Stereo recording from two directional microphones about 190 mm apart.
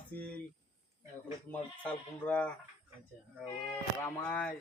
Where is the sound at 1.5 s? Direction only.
5° left (ahead or behind).